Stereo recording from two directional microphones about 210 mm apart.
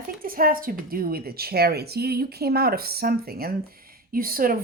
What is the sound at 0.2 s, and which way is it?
A woman's voice, 45° right (ahead or behind).